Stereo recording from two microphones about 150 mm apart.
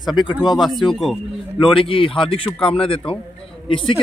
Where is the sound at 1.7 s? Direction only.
35° left (ahead or behind).